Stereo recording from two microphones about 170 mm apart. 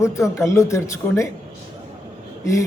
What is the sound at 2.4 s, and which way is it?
Speech, 20° left (ahead or behind).